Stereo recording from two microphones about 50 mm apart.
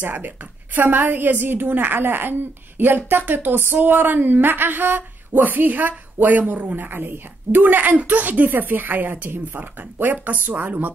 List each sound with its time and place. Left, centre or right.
0.0 s a woman's voice: right